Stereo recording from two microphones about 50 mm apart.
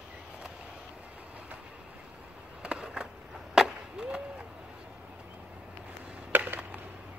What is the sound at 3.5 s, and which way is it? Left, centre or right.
Skateboard, centre.